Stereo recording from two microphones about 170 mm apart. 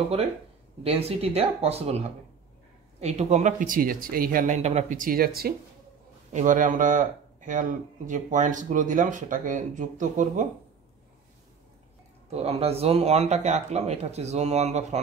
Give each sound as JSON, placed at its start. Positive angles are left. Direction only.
{"t": 0.8, "sound": "speech", "side_deg": -35}
{"t": 4.6, "sound": "speech", "side_deg": -40}
{"t": 6.3, "sound": "speech", "side_deg": -50}
{"t": 12.3, "sound": "speech", "side_deg": -35}